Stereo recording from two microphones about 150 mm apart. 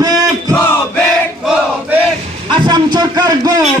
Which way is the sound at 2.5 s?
30° right (ahead or behind).